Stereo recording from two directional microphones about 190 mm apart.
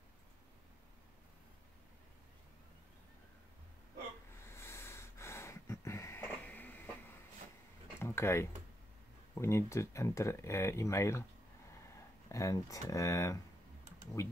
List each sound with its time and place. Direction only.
4.4 s snort: 15° left (ahead or behind)
8.0 s a sound: 15° left (ahead or behind)
9.3 s speech: 15° left (ahead or behind)
12.3 s speech: 15° left (ahead or behind)